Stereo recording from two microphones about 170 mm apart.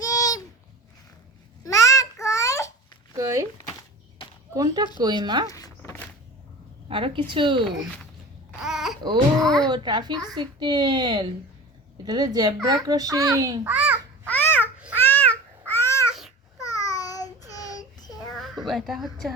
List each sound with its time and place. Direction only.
0.0 s a sound: 20° left (ahead or behind)
1.6 s babbling: 20° left (ahead or behind)
3.2 s a sound: 20° right (ahead or behind)
4.5 s speech: 20° right (ahead or behind)
5.5 s a sound: 20° left (ahead or behind)
6.8 s a woman's voice: 30° right (ahead or behind)
8.6 s babbling: centre (ahead or behind)
9.4 s a child's voice: 5° left (ahead or behind)
9.6 s speech: 25° right (ahead or behind)
13.7 s babbling: 10° right (ahead or behind)
14.3 s babbling: 10° left (ahead or behind)
16.6 s child singing: 20° left (ahead or behind)
18.3 s a woman's voice: centre (ahead or behind)